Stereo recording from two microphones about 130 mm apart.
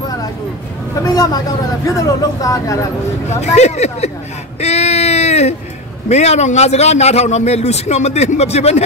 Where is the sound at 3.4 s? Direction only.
60° left (ahead or behind).